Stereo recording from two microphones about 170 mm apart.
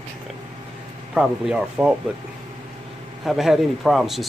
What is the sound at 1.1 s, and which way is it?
Speech, 5° right (ahead or behind).